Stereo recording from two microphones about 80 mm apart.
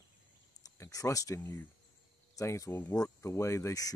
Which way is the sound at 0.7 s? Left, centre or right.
Left.